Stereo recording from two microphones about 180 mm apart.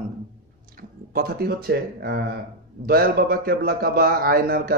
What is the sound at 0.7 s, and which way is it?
Speech, 55° right (ahead or behind).